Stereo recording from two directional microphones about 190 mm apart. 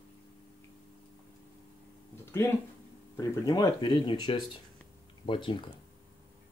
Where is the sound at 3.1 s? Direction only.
20° left (ahead or behind).